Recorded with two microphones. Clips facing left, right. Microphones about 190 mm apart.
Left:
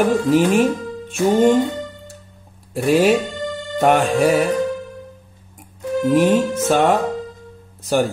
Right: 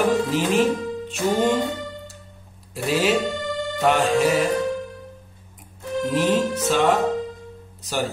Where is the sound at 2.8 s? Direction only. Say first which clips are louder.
Left 6 dB; 50° left (ahead or behind).